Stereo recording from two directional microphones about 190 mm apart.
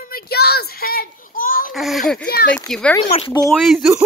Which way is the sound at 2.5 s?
5° left (ahead or behind).